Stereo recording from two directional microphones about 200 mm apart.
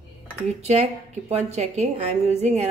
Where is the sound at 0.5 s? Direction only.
35° right (ahead or behind).